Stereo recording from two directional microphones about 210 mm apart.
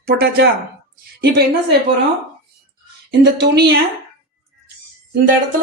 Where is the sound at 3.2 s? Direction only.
50° right (ahead or behind).